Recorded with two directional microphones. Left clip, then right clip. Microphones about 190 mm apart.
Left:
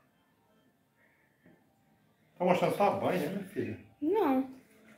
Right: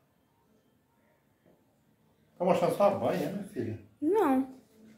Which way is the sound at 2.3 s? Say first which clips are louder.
Right 1 dB; 20° right (ahead or behind).